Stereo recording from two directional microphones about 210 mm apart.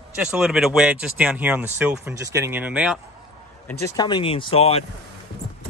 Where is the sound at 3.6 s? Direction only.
15° left (ahead or behind).